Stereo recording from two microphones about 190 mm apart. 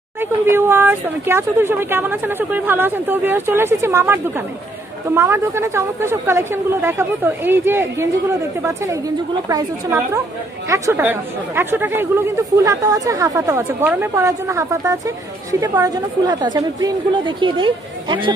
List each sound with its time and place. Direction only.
0.2 s a woman's voice: 10° right (ahead or behind)